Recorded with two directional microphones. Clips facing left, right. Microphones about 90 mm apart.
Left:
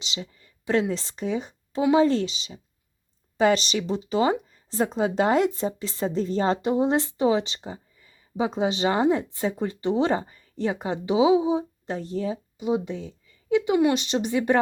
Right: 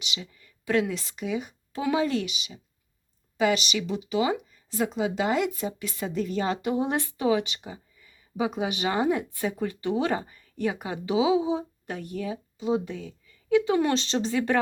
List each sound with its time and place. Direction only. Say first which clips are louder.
0.0 s speech: left 2 dB; 30° left (ahead or behind)